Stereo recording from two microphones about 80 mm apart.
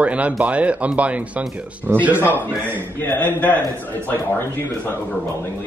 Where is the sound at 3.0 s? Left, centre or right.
Left.